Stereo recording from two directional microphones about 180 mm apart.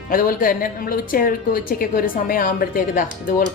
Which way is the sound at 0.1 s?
50° left (ahead or behind).